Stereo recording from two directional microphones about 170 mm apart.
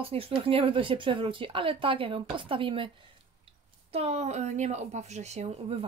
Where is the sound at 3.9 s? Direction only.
40° right (ahead or behind).